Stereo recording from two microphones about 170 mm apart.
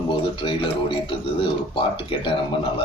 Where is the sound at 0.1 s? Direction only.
30° left (ahead or behind).